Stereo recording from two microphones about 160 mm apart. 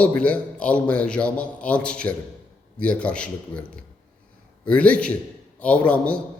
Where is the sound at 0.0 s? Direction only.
10° left (ahead or behind).